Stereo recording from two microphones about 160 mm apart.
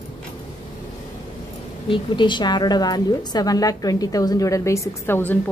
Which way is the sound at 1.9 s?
30° left (ahead or behind).